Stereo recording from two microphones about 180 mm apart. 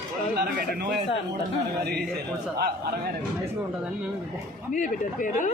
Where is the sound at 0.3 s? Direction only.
60° right (ahead or behind).